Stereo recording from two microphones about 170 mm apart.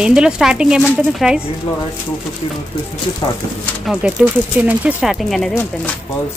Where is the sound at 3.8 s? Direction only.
10° right (ahead or behind).